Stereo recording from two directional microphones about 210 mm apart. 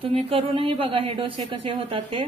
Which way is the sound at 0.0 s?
25° right (ahead or behind).